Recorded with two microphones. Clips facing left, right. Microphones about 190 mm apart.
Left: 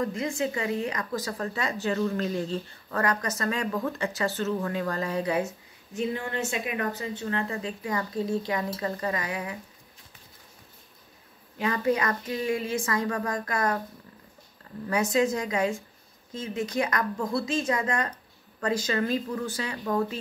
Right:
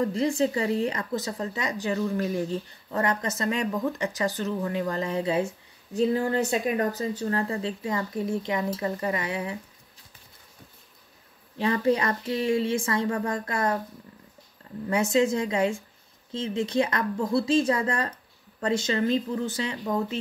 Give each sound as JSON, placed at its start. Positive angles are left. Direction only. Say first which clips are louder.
{"t": 0.0, "sound": "a woman's voice", "louder": "right 4 dB", "side_deg": -30}
{"t": 5.9, "sound": "a woman's voice", "louder": "right 6 dB", "side_deg": -35}
{"t": 11.5, "sound": "a woman's voice", "louder": "right 2 dB", "side_deg": -30}
{"t": 14.9, "sound": "a woman's voice", "louder": "right 2 dB", "side_deg": -25}